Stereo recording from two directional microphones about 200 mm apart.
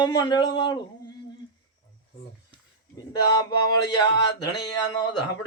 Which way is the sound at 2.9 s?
20° left (ahead or behind).